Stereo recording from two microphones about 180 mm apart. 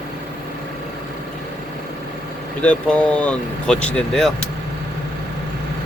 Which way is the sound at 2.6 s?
5° left (ahead or behind).